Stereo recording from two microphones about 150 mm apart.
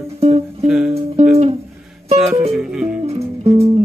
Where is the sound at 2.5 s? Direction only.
5° right (ahead or behind).